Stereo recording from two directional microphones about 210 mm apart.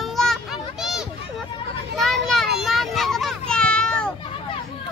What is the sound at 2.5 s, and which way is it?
Children playing, centre (ahead or behind).